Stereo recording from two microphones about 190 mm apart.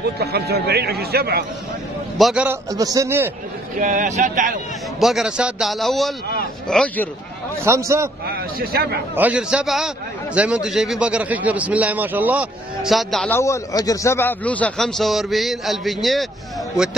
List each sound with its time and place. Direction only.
0.0 s speech: 55° right (ahead or behind)
2.1 s a man's voice: 5° right (ahead or behind)
2.7 s a man's voice: 20° right (ahead or behind)
3.7 s speech: 40° right (ahead or behind)
5.0 s a man's voice: centre (ahead or behind)
7.6 s a man's voice: 15° right (ahead or behind)
8.3 s speech: 55° right (ahead or behind)
9.1 s a man's voice: 10° right (ahead or behind)
13.4 s a man's voice: 15° left (ahead or behind); by 16.3 s centre (ahead or behind)